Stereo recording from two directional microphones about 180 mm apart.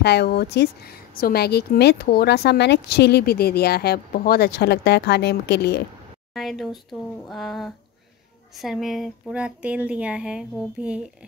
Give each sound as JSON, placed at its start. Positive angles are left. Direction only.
{"t": 0.0, "sound": "speech", "side_deg": 65}
{"t": 6.3, "sound": "speech", "side_deg": 0}